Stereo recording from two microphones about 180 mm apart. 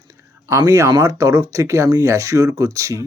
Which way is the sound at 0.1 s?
15° right (ahead or behind).